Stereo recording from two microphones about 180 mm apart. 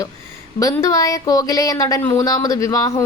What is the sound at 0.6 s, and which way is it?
Speech, 20° left (ahead or behind).